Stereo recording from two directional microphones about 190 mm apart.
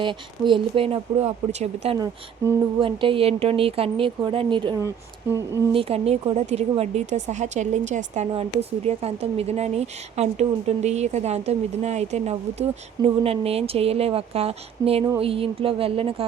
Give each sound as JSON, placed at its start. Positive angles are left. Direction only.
{"t": 0.0, "sound": "speech", "side_deg": -25}
{"t": 2.0, "sound": "speech", "side_deg": -15}
{"t": 2.8, "sound": "speech", "side_deg": -25}
{"t": 5.7, "sound": "a woman's voice", "side_deg": -30}